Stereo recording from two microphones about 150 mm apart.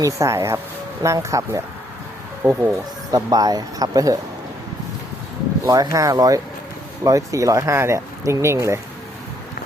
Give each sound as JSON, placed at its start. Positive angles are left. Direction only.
{"t": 0.0, "sound": "speech", "side_deg": -20}
{"t": 5.6, "sound": "speech", "side_deg": -25}